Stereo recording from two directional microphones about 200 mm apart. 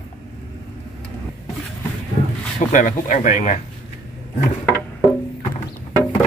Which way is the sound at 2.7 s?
40° left (ahead or behind).